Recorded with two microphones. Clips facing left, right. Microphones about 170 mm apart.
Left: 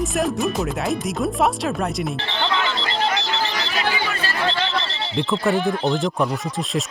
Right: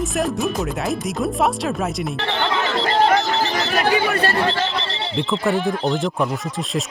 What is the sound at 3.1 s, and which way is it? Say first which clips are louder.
Chatter: right 6 dB; 45° right (ahead or behind).